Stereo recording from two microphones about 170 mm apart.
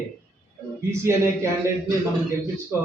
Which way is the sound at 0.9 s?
15° right (ahead or behind).